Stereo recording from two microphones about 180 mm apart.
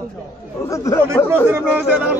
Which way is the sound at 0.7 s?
15° left (ahead or behind).